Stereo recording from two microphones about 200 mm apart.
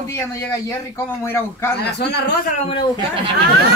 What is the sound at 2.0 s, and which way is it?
Speech, 55° left (ahead or behind).